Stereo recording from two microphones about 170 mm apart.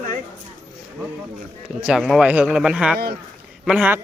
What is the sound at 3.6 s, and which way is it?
Speech, 5° right (ahead or behind).